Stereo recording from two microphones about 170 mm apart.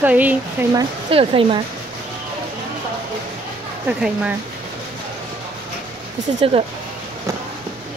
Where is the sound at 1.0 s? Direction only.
30° right (ahead or behind).